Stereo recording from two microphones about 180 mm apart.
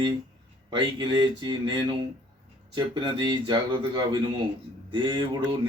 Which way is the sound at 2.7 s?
25° right (ahead or behind).